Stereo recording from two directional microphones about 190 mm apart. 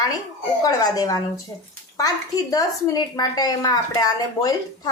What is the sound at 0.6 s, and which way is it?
A woman's voice, 20° left (ahead or behind).